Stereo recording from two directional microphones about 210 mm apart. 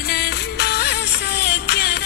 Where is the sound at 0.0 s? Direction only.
50° left (ahead or behind).